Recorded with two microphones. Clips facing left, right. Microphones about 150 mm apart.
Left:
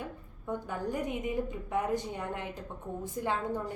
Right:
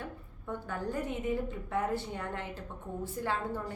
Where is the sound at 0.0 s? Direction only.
15° left (ahead or behind).